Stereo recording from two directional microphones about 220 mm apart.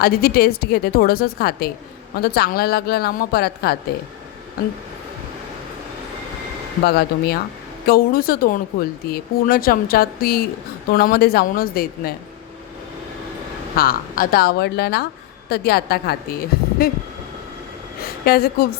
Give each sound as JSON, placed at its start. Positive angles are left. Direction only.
{"t": 0.0, "sound": "speech", "side_deg": 45}
{"t": 6.8, "sound": "speech", "side_deg": 45}
{"t": 13.7, "sound": "speech", "side_deg": 45}
{"t": 18.0, "sound": "speech", "side_deg": 45}